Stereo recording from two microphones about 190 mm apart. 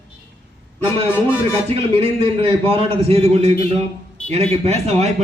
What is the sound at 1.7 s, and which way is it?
A man's voice, 30° right (ahead or behind).